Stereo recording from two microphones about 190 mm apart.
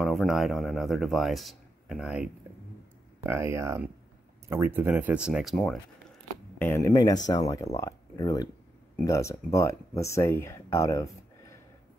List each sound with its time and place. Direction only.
0.0 s speech: centre (ahead or behind)
6.6 s speech: 15° left (ahead or behind)